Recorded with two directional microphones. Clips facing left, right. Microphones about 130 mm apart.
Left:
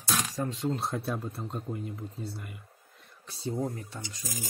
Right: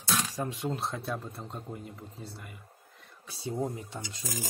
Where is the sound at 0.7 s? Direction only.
Centre (ahead or behind).